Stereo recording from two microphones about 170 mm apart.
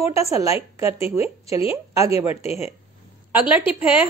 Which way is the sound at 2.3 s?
40° left (ahead or behind).